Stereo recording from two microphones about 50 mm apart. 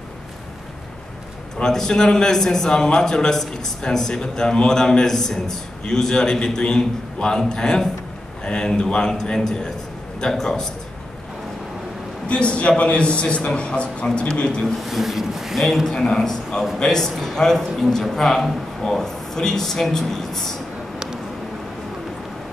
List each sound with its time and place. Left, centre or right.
1.6 s a man's voice: centre
12.3 s a man's voice: left
14.8 s a man's voice: centre